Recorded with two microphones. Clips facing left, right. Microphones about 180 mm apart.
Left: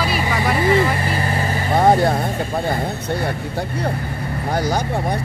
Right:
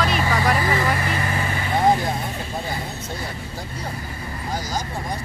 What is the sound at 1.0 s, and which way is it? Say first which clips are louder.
Vehicle: left 3 dB; 30° left (ahead or behind).